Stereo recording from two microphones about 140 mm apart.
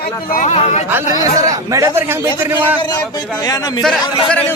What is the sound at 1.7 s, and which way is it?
A man's voice, 20° right (ahead or behind).